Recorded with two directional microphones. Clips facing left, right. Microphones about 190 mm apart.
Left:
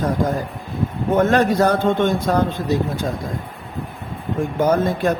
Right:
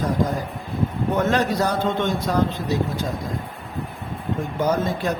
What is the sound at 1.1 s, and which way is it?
Speech, 50° left (ahead or behind).